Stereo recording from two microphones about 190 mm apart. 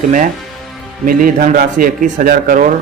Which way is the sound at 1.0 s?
50° right (ahead or behind).